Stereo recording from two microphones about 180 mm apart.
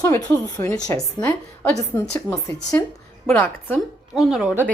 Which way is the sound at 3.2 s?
10° left (ahead or behind).